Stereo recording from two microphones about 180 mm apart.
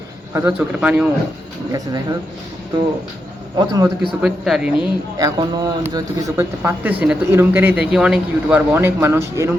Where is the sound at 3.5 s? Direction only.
20° right (ahead or behind).